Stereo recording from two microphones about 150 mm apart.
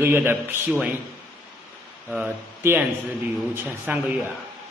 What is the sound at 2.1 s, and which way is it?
A man's voice, 15° right (ahead or behind).